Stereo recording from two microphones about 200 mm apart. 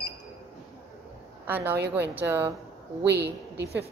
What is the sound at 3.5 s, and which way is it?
Speech, 55° right (ahead or behind).